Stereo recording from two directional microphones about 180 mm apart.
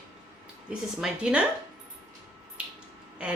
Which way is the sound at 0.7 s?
5° right (ahead or behind).